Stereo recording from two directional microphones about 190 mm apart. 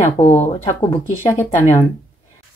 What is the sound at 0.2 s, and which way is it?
Speech, 35° left (ahead or behind).